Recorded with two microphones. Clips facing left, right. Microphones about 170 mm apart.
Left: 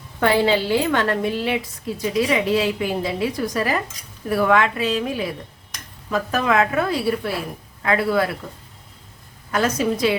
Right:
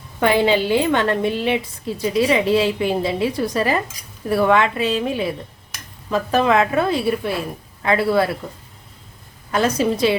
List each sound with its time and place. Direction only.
0.2 s a woman's voice: 20° right (ahead or behind)
9.5 s a woman's voice: 30° right (ahead or behind)